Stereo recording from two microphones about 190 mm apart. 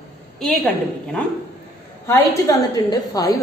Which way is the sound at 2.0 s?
15° left (ahead or behind).